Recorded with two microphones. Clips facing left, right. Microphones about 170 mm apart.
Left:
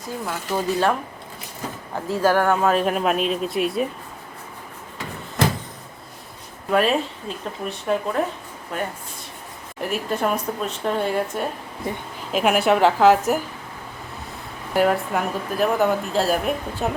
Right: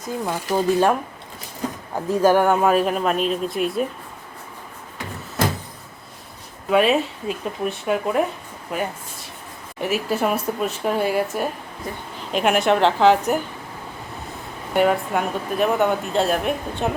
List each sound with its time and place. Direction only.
0.0 s speech: 15° right (ahead or behind)
2.0 s speech: 20° right (ahead or behind)
2.8 s speech: 5° left (ahead or behind)
6.7 s speech: 5° right (ahead or behind)
14.7 s speech: centre (ahead or behind)